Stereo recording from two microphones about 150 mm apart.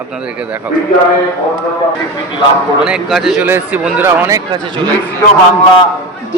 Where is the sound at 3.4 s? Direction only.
10° right (ahead or behind).